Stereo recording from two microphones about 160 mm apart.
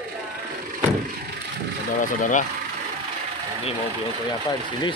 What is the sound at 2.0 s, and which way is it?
Speech, 55° left (ahead or behind).